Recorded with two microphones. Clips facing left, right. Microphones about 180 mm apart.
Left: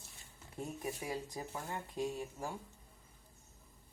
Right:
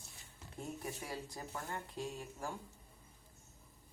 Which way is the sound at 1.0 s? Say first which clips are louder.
Left 4 dB; 15° left (ahead or behind).